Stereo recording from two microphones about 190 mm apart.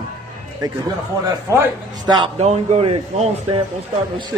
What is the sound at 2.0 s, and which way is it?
Speech, 25° right (ahead or behind).